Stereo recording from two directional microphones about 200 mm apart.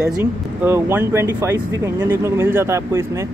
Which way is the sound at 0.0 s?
15° right (ahead or behind).